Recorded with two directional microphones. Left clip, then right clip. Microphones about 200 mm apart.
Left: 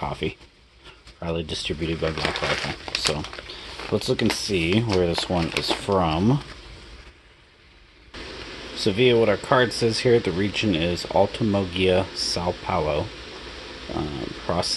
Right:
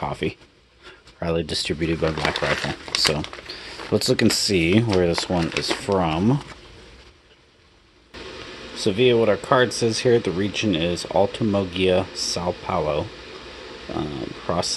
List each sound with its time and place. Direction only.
0.0 s speech: 15° right (ahead or behind)
8.7 s speech: 5° right (ahead or behind)